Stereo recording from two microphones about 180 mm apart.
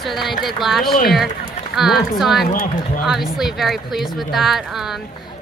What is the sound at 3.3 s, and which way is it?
Speech, centre (ahead or behind).